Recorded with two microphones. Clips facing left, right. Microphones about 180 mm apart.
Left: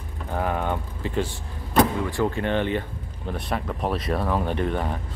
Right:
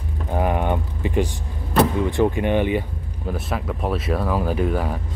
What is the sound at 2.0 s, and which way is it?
Speech, 20° right (ahead or behind).